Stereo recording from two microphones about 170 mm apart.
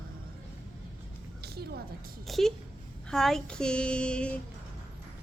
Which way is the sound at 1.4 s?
70° right (ahead or behind).